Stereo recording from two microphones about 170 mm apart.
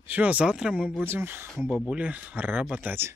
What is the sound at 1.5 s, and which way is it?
Speech, centre (ahead or behind).